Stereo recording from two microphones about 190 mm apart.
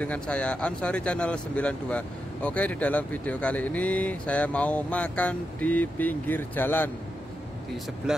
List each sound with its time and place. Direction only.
0.0 s speech: 5° left (ahead or behind)